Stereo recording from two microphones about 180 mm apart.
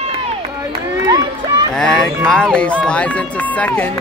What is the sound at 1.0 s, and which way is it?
Run, 20° right (ahead or behind).